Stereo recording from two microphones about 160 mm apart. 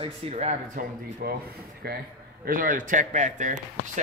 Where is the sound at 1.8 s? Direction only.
85° right.